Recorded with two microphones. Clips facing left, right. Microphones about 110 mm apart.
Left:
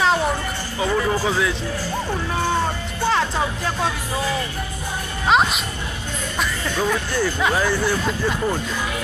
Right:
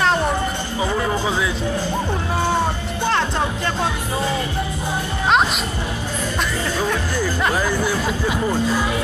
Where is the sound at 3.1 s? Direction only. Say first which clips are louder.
Even; centre (ahead or behind).